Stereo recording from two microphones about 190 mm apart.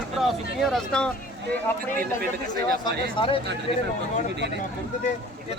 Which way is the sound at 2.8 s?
25° left (ahead or behind).